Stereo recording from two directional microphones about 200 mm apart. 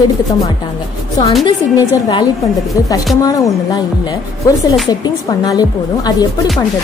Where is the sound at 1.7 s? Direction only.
20° left (ahead or behind).